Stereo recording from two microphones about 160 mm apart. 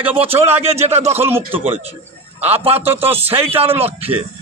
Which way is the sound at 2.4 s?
40° right (ahead or behind).